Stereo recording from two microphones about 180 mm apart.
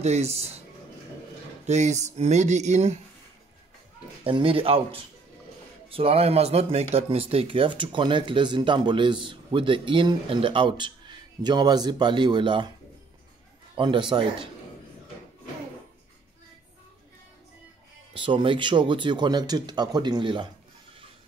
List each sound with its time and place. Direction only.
0.0 s speech: 35° right (ahead or behind)
1.7 s speech: 40° right (ahead or behind)
4.2 s speech: 30° right (ahead or behind)
13.7 s speech: 25° right (ahead or behind)
18.1 s speech: 25° right (ahead or behind)